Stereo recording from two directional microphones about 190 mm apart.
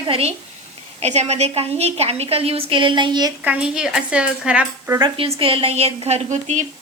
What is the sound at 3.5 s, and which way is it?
Speech, 5° right (ahead or behind).